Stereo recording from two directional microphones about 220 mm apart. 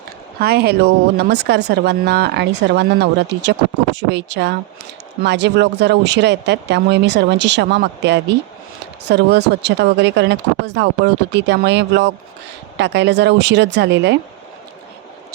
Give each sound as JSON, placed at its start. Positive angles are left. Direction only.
{"t": 0.3, "sound": "speech", "side_deg": -45}